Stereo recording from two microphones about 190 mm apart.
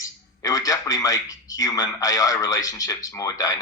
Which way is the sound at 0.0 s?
20° left (ahead or behind).